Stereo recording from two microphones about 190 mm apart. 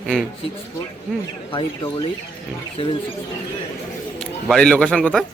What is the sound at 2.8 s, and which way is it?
Speech, 30° left (ahead or behind).